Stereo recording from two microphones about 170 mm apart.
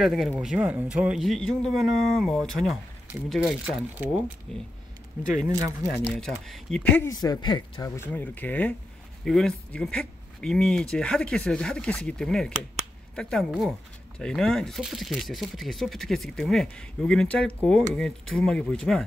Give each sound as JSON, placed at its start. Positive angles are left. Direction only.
{"t": 0.0, "sound": "speech", "side_deg": 0}
{"t": 5.5, "sound": "speech", "side_deg": -20}
{"t": 5.9, "sound": "speech", "side_deg": 5}
{"t": 7.1, "sound": "speech", "side_deg": 25}
{"t": 8.1, "sound": "speech", "side_deg": 10}